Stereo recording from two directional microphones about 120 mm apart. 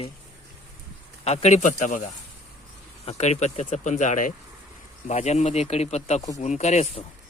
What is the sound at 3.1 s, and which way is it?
Speech, 65° left (ahead or behind).